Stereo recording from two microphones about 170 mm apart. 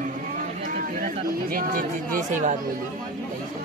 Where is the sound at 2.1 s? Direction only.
50° right (ahead or behind).